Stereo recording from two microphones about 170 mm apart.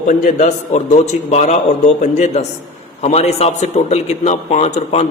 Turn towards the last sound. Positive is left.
turn(degrees=40)  # may be behind; listen again after turning